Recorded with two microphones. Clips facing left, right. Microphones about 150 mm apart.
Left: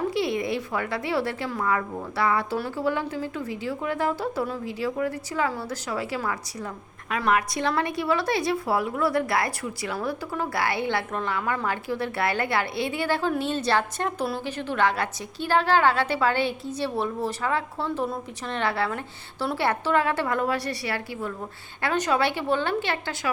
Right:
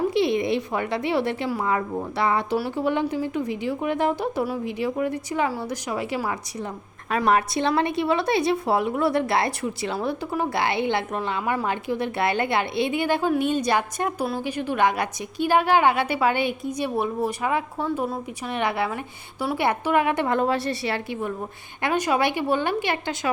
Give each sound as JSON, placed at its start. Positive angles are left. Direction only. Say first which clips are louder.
{"t": 0.1, "sound": "a woman's voice", "louder": "right 4 dB", "side_deg": -20}